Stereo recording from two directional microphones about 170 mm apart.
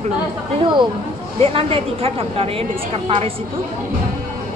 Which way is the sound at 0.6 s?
25° right (ahead or behind).